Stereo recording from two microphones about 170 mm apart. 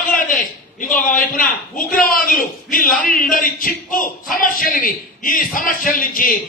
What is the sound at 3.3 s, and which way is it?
A man's voice, 50° left (ahead or behind).